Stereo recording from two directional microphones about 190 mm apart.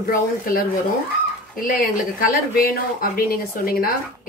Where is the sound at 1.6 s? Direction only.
45° left (ahead or behind).